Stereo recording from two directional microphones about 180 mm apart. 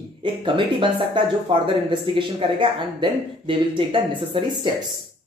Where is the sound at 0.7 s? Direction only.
30° right (ahead or behind).